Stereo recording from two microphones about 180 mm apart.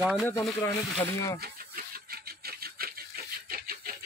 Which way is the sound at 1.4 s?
55° right (ahead or behind).